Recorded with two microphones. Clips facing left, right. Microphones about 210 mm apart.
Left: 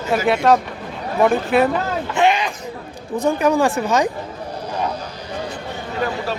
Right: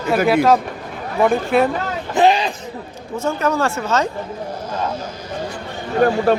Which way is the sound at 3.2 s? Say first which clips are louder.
Left 3 dB; 15° left (ahead or behind).